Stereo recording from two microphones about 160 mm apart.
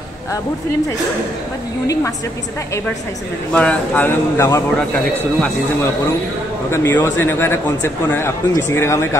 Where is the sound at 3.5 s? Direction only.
10° left (ahead or behind).